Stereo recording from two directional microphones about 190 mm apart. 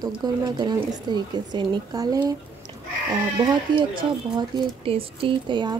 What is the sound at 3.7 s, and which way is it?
Speech, 25° right (ahead or behind).